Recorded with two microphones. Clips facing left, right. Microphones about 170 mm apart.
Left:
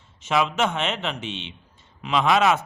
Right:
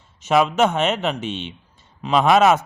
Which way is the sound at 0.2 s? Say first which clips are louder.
Right 6 dB; 40° right (ahead or behind).